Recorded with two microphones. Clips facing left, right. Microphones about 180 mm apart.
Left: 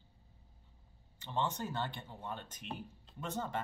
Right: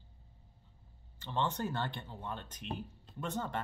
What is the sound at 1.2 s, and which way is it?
Speech, 10° left (ahead or behind).